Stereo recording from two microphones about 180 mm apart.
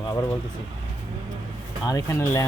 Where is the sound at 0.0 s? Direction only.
20° left (ahead or behind).